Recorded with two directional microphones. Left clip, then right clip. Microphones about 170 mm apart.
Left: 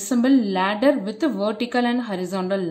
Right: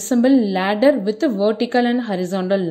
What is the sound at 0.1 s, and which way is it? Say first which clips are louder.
A woman's voice: right 4 dB; 20° right (ahead or behind).